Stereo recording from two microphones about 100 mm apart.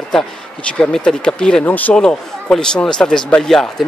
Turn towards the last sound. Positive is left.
turn(degrees=5)  # may be behind; listen again after turning